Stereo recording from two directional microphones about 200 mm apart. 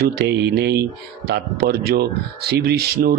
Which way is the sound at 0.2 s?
55° right (ahead or behind).